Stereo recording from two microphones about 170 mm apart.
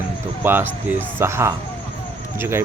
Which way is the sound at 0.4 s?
10° right (ahead or behind).